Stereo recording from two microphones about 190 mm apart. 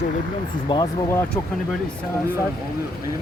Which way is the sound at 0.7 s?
20° left (ahead or behind).